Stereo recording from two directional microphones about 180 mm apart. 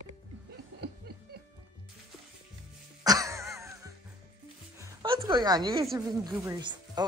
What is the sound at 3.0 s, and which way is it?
Music, 20° right (ahead or behind).